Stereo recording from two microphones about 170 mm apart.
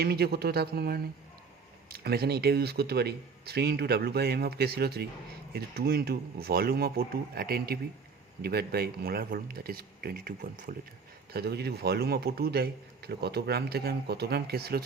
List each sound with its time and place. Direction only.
0.0 s a man's voice: 70° right (ahead or behind)
11.3 s a man's voice: 70° right (ahead or behind)